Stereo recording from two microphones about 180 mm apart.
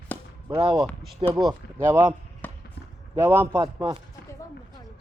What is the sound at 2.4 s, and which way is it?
Basketball bounce, 10° left (ahead or behind).